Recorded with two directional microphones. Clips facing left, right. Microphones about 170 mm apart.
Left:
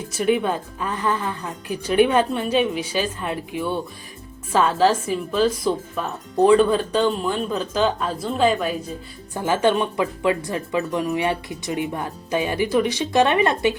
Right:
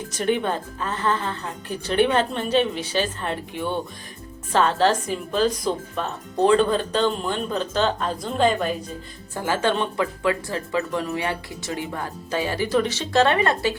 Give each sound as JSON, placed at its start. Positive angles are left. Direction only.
{"t": 0.1, "sound": "speech", "side_deg": 10}
{"t": 9.3, "sound": "speech", "side_deg": 15}